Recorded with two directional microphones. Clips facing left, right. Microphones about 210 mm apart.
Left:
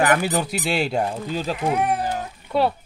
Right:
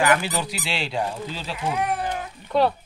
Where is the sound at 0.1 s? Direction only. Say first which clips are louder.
Left 2 dB; 50° left (ahead or behind).